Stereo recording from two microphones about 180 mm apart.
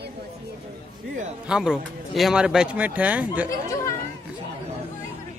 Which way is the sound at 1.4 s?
5° right (ahead or behind).